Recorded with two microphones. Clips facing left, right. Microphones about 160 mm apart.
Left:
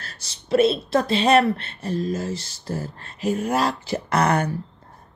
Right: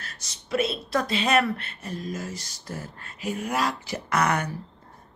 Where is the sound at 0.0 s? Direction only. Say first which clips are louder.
Left 2 dB; 30° left (ahead or behind).